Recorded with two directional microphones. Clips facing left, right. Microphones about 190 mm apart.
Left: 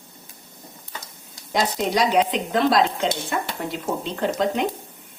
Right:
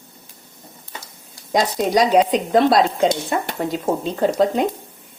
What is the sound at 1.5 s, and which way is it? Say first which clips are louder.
Speech: right 4 dB; 40° right (ahead or behind).